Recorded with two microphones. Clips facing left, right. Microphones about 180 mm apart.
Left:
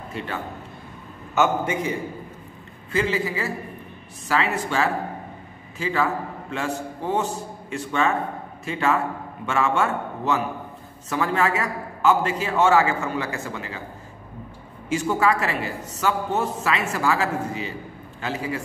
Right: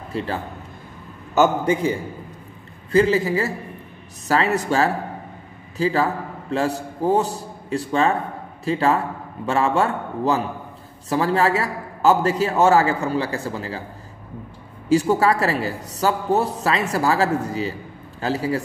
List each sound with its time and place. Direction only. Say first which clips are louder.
0.1 s a man's voice: right 5 dB; 35° right (ahead or behind)
14.9 s a man's voice: right 4 dB; 35° right (ahead or behind)